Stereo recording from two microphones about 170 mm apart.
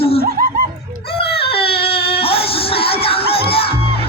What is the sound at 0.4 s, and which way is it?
Laughter, 60° right (ahead or behind).